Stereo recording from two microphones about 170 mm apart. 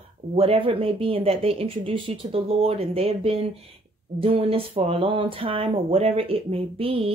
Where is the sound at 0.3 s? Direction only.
35° right (ahead or behind).